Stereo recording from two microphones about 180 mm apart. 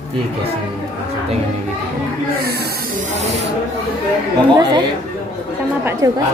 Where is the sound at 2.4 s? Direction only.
60° right (ahead or behind); by 3.2 s 45° right (ahead or behind).